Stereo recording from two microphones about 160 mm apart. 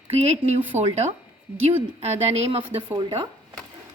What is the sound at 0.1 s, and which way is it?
Speech, 40° right (ahead or behind).